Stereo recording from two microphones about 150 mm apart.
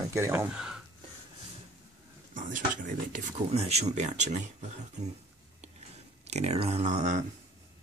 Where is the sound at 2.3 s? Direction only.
60° right (ahead or behind).